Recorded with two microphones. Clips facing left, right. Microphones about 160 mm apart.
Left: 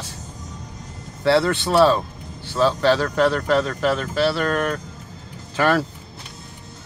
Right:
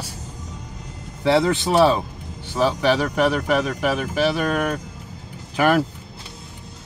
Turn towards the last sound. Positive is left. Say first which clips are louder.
# right 1 dB
turn(degrees=-15)  # may be behind; listen again after turning